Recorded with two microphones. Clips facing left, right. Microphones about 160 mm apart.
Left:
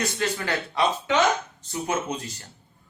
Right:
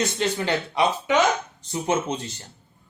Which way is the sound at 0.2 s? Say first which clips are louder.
Right 3 dB; 20° right (ahead or behind).